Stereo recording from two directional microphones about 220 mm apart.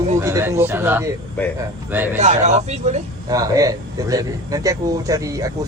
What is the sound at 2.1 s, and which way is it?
Speech, 35° right (ahead or behind).